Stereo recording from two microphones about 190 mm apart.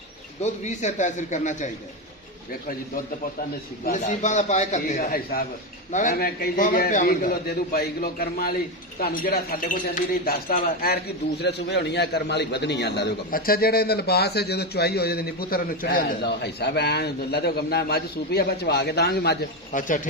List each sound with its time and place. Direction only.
0.4 s a man's voice: 40° left (ahead or behind)